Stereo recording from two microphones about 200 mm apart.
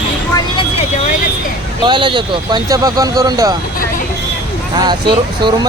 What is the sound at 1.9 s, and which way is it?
Speech, 25° right (ahead or behind).